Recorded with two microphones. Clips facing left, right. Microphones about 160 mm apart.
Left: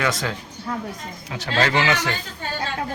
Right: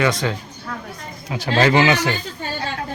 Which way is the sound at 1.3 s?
15° right (ahead or behind).